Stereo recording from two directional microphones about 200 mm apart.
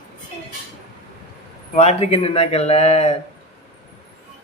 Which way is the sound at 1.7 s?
30° left (ahead or behind).